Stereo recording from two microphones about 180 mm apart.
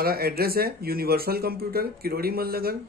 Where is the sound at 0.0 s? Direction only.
55° right (ahead or behind).